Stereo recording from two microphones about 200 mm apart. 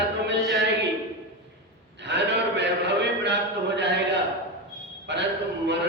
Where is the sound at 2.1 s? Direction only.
60° right (ahead or behind).